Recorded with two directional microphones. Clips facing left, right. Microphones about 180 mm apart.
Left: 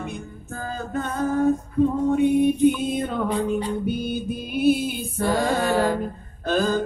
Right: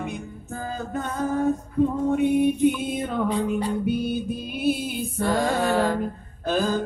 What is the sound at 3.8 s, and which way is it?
Music, centre (ahead or behind).